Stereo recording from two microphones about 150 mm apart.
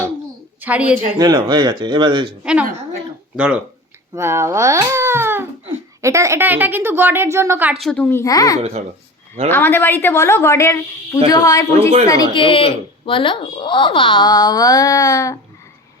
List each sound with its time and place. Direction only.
0.6 s a woman's voice: 10° right (ahead or behind)
1.2 s speech: 30° right (ahead or behind)
2.4 s a woman's voice: 5° right (ahead or behind)
4.1 s a woman's voice: 20° right (ahead or behind)
7.7 s a woman's voice: centre (ahead or behind)
8.2 s speech: 25° left (ahead or behind)
9.5 s a woman's voice: 10° left (ahead or behind)
11.8 s a woman's voice: 40° right (ahead or behind)
12.0 s speech: 25° left (ahead or behind)